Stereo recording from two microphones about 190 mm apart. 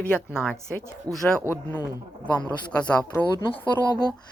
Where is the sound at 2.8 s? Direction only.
5° left (ahead or behind).